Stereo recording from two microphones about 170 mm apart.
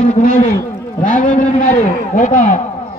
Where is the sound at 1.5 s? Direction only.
50° left (ahead or behind).